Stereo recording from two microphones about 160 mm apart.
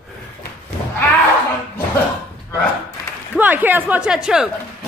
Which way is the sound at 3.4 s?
10° right (ahead or behind).